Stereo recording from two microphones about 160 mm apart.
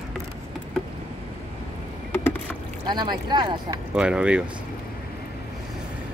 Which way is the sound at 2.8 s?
25° right (ahead or behind).